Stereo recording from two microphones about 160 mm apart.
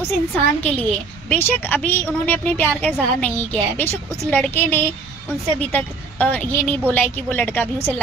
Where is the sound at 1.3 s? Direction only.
10° left (ahead or behind).